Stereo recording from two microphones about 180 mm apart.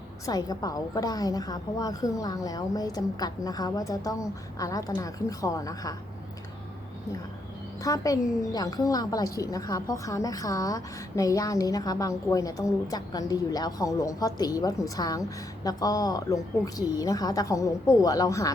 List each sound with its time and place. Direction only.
0.3 s a woman's voice: 20° left (ahead or behind)
7.9 s a woman's voice: 20° left (ahead or behind)